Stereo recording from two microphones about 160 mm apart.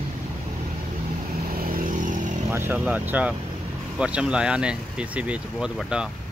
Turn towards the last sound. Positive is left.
turn(degrees=-5)  # may be behind; listen again after turning